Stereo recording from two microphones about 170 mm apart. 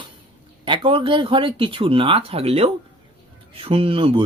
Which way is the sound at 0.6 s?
30° right (ahead or behind).